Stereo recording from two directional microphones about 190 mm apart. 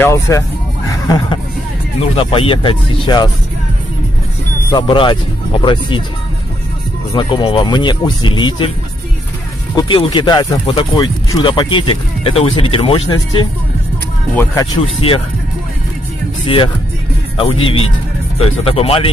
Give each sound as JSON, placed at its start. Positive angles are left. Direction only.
{"t": 0.0, "sound": "speech", "side_deg": 15}
{"t": 4.6, "sound": "speech", "side_deg": 25}
{"t": 7.1, "sound": "speech", "side_deg": 25}
{"t": 9.8, "sound": "speech", "side_deg": 25}
{"t": 15.0, "sound": "speech", "side_deg": 30}
{"t": 16.4, "sound": "speech", "side_deg": 25}